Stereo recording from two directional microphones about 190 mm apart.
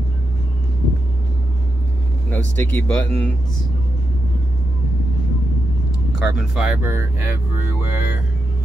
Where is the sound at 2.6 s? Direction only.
10° left (ahead or behind).